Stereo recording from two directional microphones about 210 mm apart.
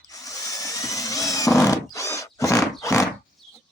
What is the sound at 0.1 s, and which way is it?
Drill, 15° left (ahead or behind).